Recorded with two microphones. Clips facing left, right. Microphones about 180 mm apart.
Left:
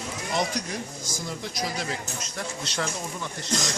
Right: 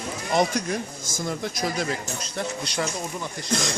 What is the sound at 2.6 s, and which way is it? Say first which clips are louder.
Speech: left 1 dB; 10° right (ahead or behind).